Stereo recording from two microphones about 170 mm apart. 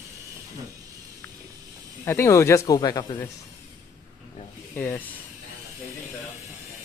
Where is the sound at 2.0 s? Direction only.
15° left (ahead or behind).